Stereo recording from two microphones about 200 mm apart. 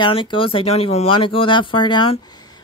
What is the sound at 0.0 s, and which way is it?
Speech, 25° left (ahead or behind).